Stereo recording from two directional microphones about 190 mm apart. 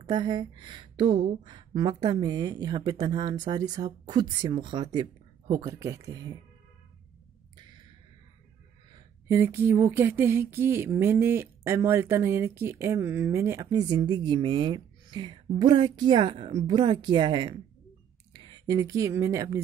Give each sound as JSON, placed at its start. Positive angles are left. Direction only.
{"t": 0.0, "sound": "speech", "side_deg": -25}
{"t": 8.9, "sound": "speech", "side_deg": -15}